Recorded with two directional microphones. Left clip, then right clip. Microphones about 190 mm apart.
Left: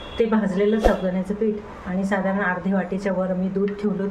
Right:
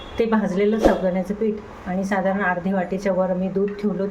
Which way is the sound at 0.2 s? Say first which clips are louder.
Right 1 dB; 20° right (ahead or behind).